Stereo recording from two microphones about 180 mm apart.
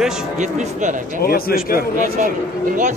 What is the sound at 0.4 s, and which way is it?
Speech, 45° right (ahead or behind).